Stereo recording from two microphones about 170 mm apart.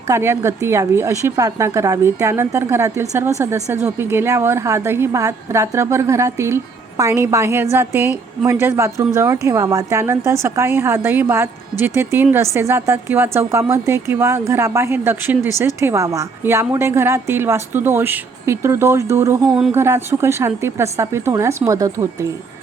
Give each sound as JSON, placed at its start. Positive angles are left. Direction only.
{"t": 0.1, "sound": "a woman's voice", "side_deg": -15}